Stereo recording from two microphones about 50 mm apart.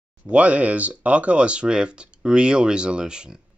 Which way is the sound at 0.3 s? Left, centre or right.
Right.